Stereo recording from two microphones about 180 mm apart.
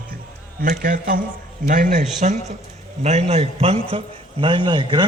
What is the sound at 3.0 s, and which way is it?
A man's voice, 35° right (ahead or behind).